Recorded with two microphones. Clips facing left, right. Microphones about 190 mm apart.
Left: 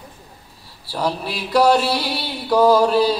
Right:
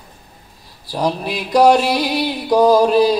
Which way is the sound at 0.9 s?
15° right (ahead or behind).